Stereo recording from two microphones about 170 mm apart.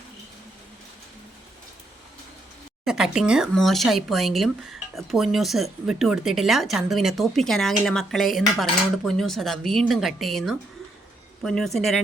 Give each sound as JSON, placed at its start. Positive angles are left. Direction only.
{"t": 2.8, "sound": "speech", "side_deg": -5}